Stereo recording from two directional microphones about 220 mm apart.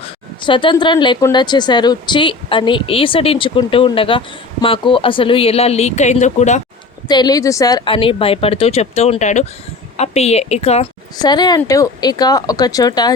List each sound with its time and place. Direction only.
0.0 s speech: 20° left (ahead or behind)
7.1 s speech: 20° left (ahead or behind)
11.2 s speech: 20° left (ahead or behind)